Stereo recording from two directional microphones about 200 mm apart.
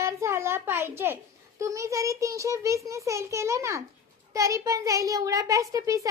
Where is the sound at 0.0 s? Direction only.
15° right (ahead or behind).